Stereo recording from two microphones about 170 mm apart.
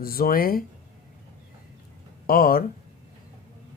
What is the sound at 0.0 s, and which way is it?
Speech, 60° left (ahead or behind).